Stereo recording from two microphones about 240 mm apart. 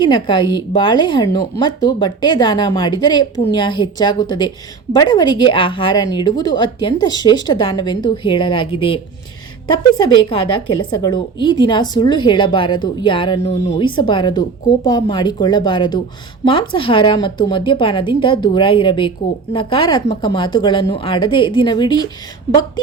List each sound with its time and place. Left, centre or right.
0.0 s speech: centre
11.0 s a woman's voice: centre